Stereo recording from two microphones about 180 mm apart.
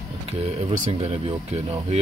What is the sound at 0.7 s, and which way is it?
Speech, 40° right (ahead or behind).